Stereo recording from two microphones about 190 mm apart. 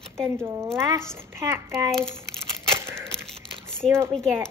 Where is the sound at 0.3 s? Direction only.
15° right (ahead or behind).